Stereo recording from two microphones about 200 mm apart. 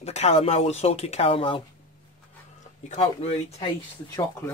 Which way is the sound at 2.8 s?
30° left (ahead or behind).